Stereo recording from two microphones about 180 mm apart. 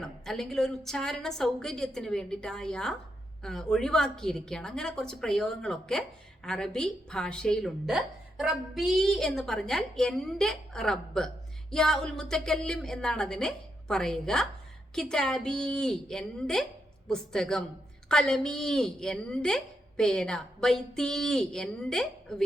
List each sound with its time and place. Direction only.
0.0 s a woman's voice: centre (ahead or behind)